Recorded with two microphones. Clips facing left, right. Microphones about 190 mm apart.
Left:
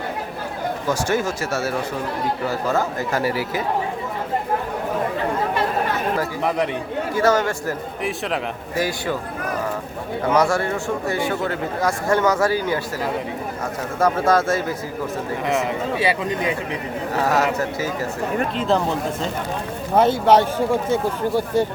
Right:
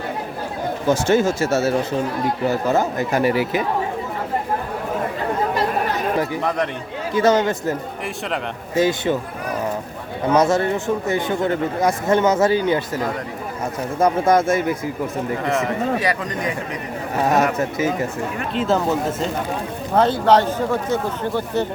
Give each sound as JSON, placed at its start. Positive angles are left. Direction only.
{"t": 0.9, "sound": "a man's voice", "side_deg": -25}
{"t": 7.1, "sound": "a man's voice", "side_deg": -20}
{"t": 10.3, "sound": "a man's voice", "side_deg": -20}
{"t": 14.0, "sound": "a man's voice", "side_deg": -20}
{"t": 16.0, "sound": "speech", "side_deg": 25}
{"t": 17.2, "sound": "a man's voice", "side_deg": -20}
{"t": 18.5, "sound": "speech", "side_deg": -5}
{"t": 20.0, "sound": "speech", "side_deg": 10}